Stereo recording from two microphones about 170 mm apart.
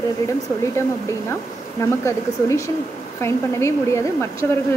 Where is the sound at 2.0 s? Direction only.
15° left (ahead or behind).